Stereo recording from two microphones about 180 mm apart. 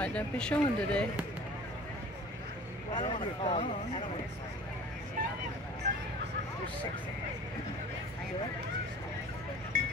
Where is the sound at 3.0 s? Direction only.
40° left (ahead or behind).